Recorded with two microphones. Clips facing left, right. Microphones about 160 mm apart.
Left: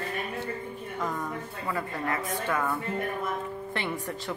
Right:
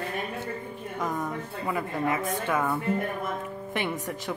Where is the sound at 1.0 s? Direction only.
15° right (ahead or behind).